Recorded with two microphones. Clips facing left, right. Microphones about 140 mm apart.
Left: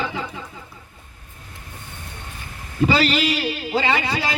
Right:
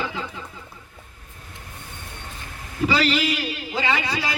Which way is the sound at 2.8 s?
30° left (ahead or behind).